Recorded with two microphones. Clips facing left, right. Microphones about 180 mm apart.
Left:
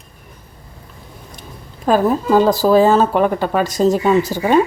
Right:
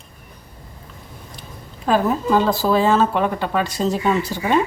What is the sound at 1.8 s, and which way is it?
Speech, 40° left (ahead or behind).